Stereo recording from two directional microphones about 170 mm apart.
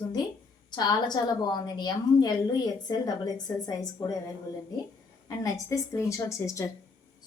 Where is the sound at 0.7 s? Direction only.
25° left (ahead or behind).